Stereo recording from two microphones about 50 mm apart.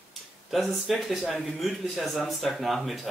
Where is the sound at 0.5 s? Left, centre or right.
Centre.